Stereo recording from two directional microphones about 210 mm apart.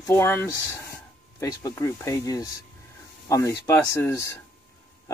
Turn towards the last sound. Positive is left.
turn(degrees=15)  # may be behind; listen again after turning